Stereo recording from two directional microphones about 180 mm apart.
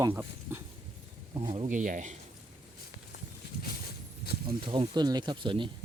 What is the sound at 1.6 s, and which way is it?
Speech, 45° right (ahead or behind).